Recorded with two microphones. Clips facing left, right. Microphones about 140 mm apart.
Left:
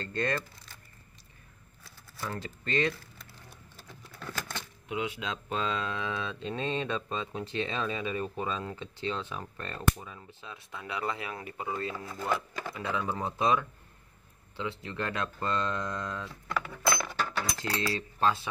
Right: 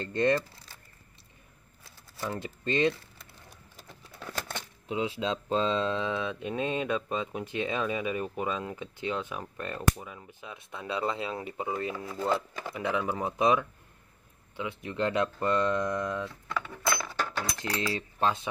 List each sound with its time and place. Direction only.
0.0 s speech: 20° right (ahead or behind)
1.8 s a sound: 20° right (ahead or behind)
3.9 s speech: 25° right (ahead or behind)
16.4 s speech: 5° left (ahead or behind)
17.7 s cutlery: 20° right (ahead or behind)